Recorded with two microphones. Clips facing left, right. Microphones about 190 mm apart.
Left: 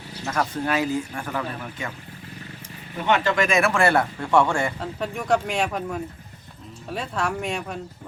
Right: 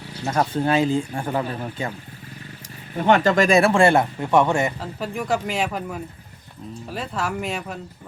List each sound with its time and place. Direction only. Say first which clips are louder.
0.3 s speech: right 4 dB; 30° right (ahead or behind)
3.0 s speech: right 4 dB; 40° right (ahead or behind); by 4.7 s 20° right (ahead or behind)
4.8 s speech: right 1 dB; centre (ahead or behind)